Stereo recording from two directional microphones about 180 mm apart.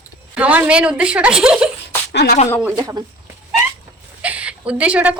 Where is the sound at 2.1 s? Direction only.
65° left (ahead or behind).